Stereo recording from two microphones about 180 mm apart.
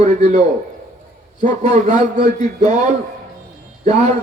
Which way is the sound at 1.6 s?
35° right (ahead or behind).